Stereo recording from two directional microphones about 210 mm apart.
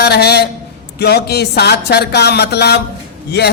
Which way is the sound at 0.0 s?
50° left (ahead or behind).